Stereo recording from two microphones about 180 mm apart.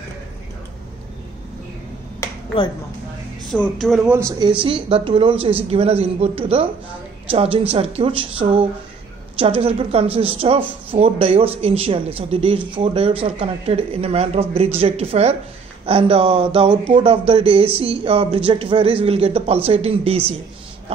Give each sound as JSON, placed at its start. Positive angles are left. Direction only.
{"t": 3.4, "sound": "a sound", "side_deg": 0}
{"t": 4.0, "sound": "speech", "side_deg": -15}
{"t": 7.7, "sound": "speech", "side_deg": -30}